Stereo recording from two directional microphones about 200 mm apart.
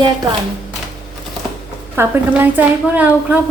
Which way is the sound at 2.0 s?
10° right (ahead or behind).